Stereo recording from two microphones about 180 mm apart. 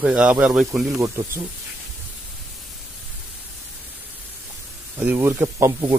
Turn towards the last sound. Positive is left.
turn(degrees=-20)  # may be behind; listen again after turning